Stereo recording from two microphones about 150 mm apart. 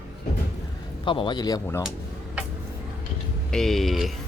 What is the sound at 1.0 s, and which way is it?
Speech, 35° left (ahead or behind).